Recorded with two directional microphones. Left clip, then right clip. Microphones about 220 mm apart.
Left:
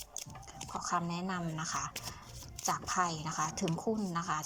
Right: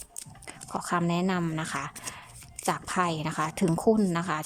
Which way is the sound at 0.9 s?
20° right (ahead or behind).